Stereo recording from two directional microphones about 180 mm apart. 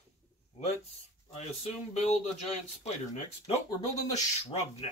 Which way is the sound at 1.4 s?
35° left (ahead or behind).